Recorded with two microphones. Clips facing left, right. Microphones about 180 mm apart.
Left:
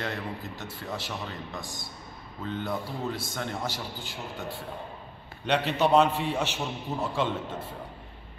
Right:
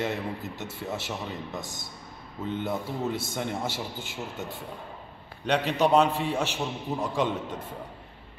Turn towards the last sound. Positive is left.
turn(degrees=-15)  # may be behind; listen again after turning